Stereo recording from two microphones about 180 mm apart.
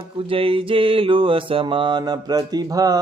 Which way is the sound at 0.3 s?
30° right (ahead or behind).